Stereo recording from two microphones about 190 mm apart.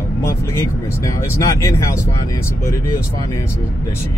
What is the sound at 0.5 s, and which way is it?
Speech, 15° left (ahead or behind).